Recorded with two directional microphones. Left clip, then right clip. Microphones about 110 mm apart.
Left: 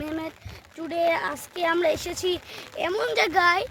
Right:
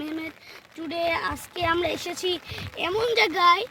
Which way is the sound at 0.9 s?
25° left (ahead or behind).